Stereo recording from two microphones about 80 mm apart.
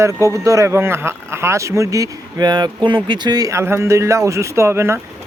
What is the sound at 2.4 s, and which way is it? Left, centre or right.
Speech, right.